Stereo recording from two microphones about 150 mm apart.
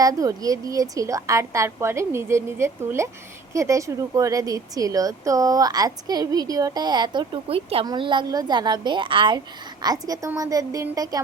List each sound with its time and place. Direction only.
0.0 s a woman's voice: 25° right (ahead or behind)